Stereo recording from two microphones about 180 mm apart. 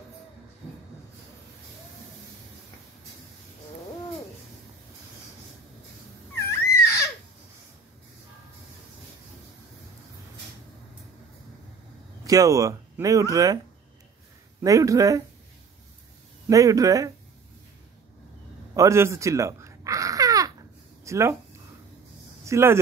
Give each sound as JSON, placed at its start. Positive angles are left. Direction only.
{"t": 6.3, "sound": "dog", "side_deg": 15}
{"t": 12.3, "sound": "speech", "side_deg": -20}
{"t": 14.6, "sound": "speech", "side_deg": -20}
{"t": 16.4, "sound": "speech", "side_deg": -20}
{"t": 18.8, "sound": "babbling", "side_deg": -15}
{"t": 21.0, "sound": "speech", "side_deg": -15}
{"t": 22.4, "sound": "speech", "side_deg": -15}